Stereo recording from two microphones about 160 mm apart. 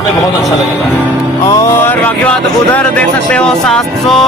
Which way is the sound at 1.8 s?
10° left (ahead or behind).